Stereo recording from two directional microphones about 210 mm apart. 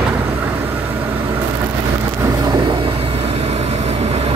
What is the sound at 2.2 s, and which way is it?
Vehicle, 20° right (ahead or behind).